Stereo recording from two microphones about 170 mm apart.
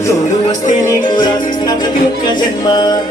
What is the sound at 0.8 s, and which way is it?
Music, 25° left (ahead or behind).